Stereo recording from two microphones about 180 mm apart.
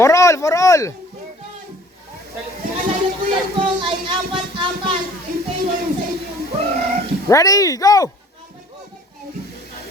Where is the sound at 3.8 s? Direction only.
25° right (ahead or behind).